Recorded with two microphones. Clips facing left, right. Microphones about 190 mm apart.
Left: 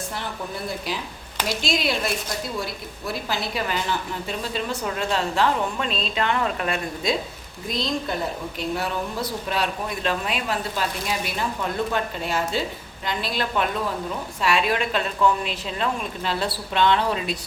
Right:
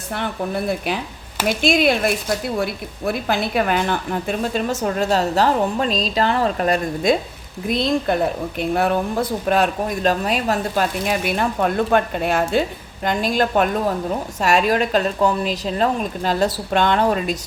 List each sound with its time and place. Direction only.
0.1 s a woman's voice: 60° right (ahead or behind)
7.7 s a woman's voice: 60° right (ahead or behind)
13.1 s a woman's voice: 45° right (ahead or behind)